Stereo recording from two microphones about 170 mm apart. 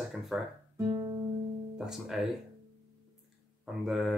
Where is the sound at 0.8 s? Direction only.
20° right (ahead or behind).